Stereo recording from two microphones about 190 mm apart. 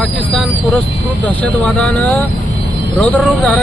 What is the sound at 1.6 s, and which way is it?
Speech, 5° left (ahead or behind).